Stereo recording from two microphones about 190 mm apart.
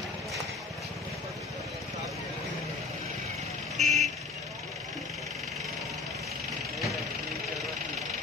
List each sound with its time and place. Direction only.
3.7 s vehicle: 35° right (ahead or behind)